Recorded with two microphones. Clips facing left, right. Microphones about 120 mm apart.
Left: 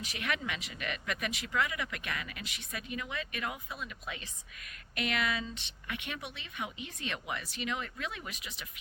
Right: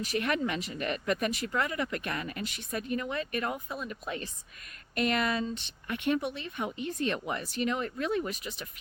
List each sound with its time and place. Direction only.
0.0 s speech: 45° right (ahead or behind)